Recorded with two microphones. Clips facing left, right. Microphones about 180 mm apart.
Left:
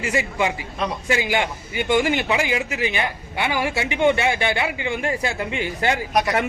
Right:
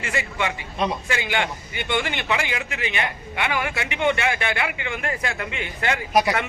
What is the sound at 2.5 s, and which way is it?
A man's voice, 30° left (ahead or behind).